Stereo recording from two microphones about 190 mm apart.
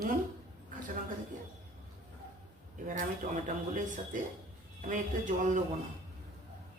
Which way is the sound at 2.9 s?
45° right (ahead or behind).